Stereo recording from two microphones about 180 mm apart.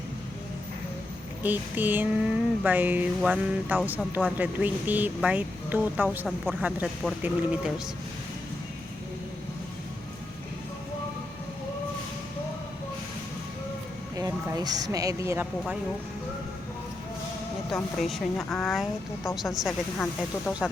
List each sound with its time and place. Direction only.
1.4 s a sound: 10° right (ahead or behind)
14.2 s speech: 20° right (ahead or behind)
17.7 s speech: centre (ahead or behind)